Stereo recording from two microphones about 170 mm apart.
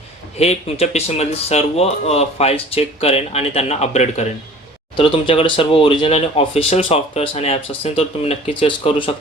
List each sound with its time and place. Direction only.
0.3 s speech: 40° left (ahead or behind)